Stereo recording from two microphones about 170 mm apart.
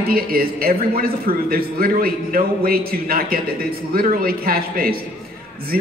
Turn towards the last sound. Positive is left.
turn(degrees=-60)  # may be behind; listen again after turning